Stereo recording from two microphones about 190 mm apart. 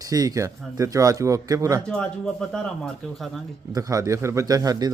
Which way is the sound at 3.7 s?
15° right (ahead or behind).